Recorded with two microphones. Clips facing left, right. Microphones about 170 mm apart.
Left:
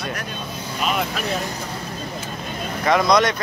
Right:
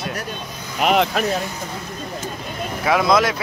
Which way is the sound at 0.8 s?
65° right (ahead or behind).